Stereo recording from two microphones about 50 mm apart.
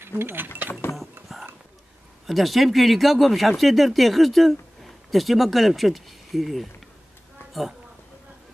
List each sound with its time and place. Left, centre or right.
0.2 s speech: right
2.2 s speech: centre